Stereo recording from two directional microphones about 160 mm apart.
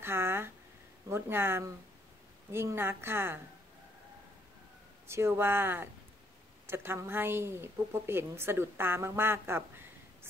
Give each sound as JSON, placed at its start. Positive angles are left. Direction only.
{"t": 0.0, "sound": "a sound", "side_deg": -15}
{"t": 1.0, "sound": "a woman's voice", "side_deg": -15}
{"t": 5.0, "sound": "a woman's voice", "side_deg": -15}